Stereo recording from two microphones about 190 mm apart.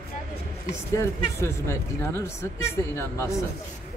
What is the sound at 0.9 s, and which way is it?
Speech, 15° left (ahead or behind).